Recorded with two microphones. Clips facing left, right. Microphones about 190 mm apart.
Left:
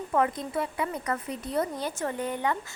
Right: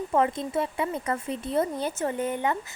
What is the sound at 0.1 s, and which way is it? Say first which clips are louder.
A woman's voice: right 1 dB; 25° right (ahead or behind).